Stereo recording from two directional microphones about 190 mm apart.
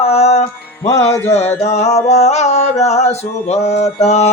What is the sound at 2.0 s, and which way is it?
Music, 35° left (ahead or behind).